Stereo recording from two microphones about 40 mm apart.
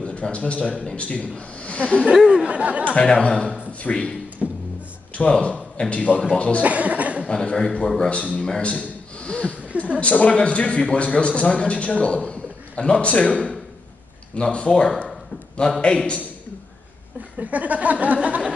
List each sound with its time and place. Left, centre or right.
0.0 s a man's voice: left
2.1 s speech: centre
2.4 s speech: right
3.0 s a man's voice: centre
4.4 s music: centre
5.3 s a man's voice: left
6.6 s cough: right
7.2 s a man's voice: left
8.0 s a man's voice: left
9.2 s a sound: left
9.9 s a man's voice: left
13.3 s a man's voice: centre
17.4 s speech: right